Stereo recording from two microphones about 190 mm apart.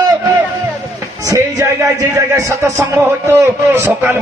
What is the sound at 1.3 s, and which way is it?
A man's voice, 15° right (ahead or behind).